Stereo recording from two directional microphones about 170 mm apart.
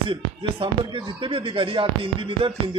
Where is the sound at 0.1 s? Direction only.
30° right (ahead or behind).